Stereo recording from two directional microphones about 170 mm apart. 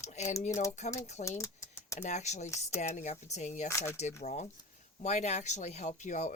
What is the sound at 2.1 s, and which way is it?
Speech, 45° left (ahead or behind).